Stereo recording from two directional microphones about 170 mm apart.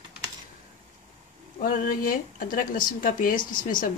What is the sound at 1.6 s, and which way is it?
Speech, 55° left (ahead or behind).